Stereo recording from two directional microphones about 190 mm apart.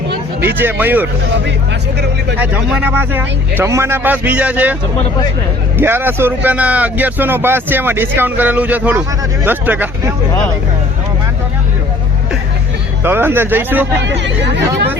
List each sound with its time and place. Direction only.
0.4 s speech: 10° right (ahead or behind)
2.4 s speech: 5° right (ahead or behind)
13.0 s speech: 10° right (ahead or behind)
14.0 s speech: 70° right (ahead or behind)